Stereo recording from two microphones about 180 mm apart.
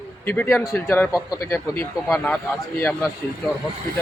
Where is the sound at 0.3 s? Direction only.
15° left (ahead or behind).